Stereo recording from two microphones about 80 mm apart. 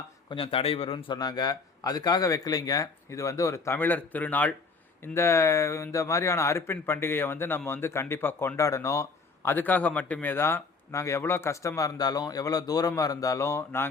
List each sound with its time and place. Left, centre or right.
0.3 s speech: left
3.8 s speech: left
5.0 s speech: left
8.5 s speech: left
9.5 s speech: left